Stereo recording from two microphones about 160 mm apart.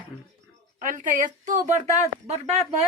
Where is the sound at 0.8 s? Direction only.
55° right (ahead or behind).